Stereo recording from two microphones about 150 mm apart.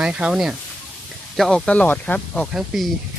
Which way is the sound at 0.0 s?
5° right (ahead or behind).